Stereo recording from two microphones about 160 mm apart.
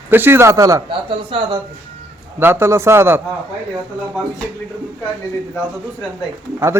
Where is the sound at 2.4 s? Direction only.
15° right (ahead or behind).